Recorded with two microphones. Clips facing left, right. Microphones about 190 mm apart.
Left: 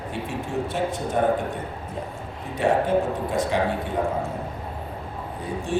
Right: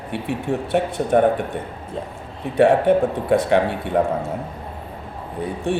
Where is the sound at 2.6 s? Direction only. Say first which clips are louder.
Right 6 dB; 65° right (ahead or behind).